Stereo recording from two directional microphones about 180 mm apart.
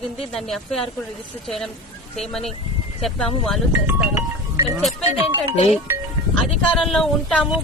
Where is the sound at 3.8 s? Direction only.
15° right (ahead or behind).